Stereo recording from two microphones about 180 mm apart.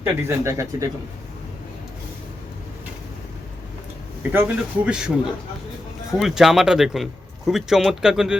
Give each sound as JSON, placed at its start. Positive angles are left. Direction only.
{"t": 0.0, "sound": "speech", "side_deg": -15}
{"t": 4.2, "sound": "speech", "side_deg": -10}